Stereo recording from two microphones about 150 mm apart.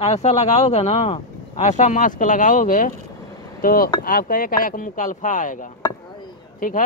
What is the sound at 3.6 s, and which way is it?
Speech, 75° left (ahead or behind).